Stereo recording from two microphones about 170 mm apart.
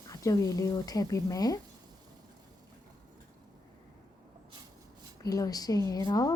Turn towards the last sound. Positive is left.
turn(degrees=20)  # may be behind; listen again after turning